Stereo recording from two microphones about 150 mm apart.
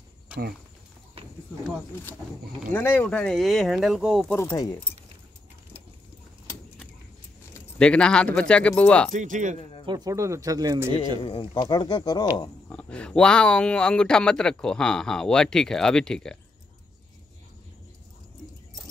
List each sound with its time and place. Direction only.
2.7 s speech: 15° left (ahead or behind); by 4.3 s 5° right (ahead or behind)
4.4 s speech: 20° left (ahead or behind)
7.8 s speech: 5° left (ahead or behind)
9.1 s speech: 55° right (ahead or behind)
9.6 s speech: 35° left (ahead or behind)
9.8 s speech: 25° right (ahead or behind)
11.2 s speech: 35° left (ahead or behind)
12.6 s speech: 5° left (ahead or behind)